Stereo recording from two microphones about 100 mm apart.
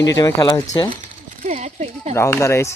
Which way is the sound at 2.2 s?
25° left (ahead or behind).